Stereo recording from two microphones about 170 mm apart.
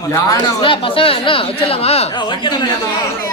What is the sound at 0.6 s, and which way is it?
Speech, 30° left (ahead or behind).